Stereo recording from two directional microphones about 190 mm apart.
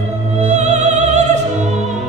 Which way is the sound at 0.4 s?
35° right (ahead or behind).